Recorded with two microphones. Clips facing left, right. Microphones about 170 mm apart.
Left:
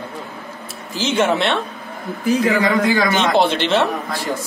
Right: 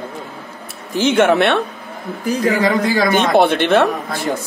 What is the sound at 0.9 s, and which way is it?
Speech, 60° right (ahead or behind).